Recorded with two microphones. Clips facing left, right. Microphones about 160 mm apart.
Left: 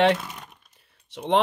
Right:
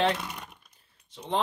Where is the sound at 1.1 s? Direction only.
75° left (ahead or behind).